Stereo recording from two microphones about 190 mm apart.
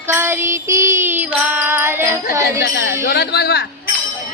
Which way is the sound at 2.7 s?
60° left (ahead or behind).